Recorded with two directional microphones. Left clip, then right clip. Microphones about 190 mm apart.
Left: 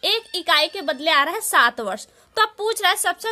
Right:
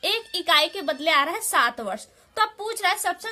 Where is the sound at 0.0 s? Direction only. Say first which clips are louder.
Left 3 dB; 30° left (ahead or behind).